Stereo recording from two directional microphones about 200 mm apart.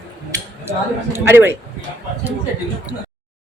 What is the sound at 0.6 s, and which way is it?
Speech, 10° right (ahead or behind).